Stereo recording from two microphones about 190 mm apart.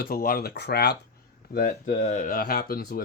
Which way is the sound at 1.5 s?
45° left (ahead or behind).